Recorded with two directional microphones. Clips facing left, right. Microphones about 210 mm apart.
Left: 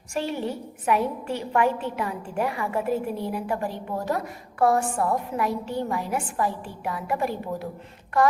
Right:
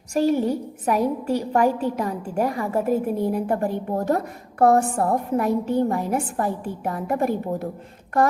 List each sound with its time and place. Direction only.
0.1 s a woman's voice: 40° right (ahead or behind)